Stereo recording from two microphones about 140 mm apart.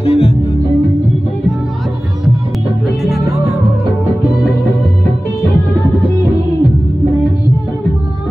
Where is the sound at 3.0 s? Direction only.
Centre (ahead or behind).